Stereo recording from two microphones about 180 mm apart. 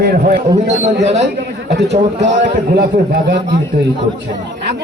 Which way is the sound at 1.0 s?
40° right (ahead or behind).